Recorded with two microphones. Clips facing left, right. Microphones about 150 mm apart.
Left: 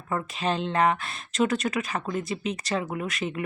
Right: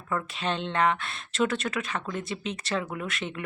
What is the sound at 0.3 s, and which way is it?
Speech, 5° left (ahead or behind).